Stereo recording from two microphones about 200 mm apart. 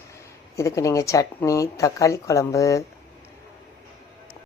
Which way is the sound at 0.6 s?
15° left (ahead or behind).